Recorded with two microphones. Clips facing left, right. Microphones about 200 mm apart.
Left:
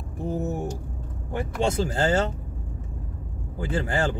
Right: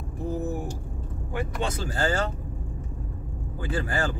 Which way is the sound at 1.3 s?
25° left (ahead or behind).